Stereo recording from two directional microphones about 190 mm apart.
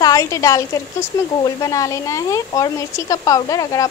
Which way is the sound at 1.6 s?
15° left (ahead or behind).